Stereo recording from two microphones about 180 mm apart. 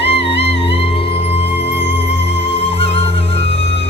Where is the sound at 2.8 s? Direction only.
35° left (ahead or behind).